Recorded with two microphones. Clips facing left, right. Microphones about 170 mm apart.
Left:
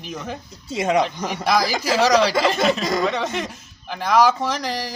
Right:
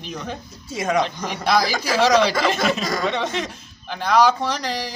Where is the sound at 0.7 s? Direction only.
20° left (ahead or behind).